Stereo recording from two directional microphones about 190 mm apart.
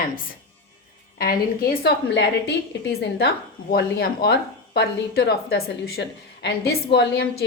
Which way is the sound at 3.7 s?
60° left (ahead or behind).